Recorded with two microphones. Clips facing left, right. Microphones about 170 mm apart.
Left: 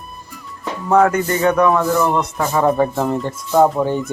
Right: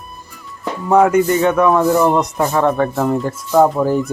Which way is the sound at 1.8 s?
20° right (ahead or behind).